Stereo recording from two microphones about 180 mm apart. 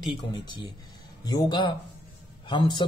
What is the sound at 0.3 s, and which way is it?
A man's voice, 25° left (ahead or behind).